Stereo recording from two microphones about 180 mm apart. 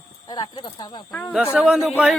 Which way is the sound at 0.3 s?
25° left (ahead or behind).